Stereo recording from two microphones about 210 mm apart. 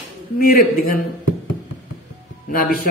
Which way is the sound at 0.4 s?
45° left (ahead or behind).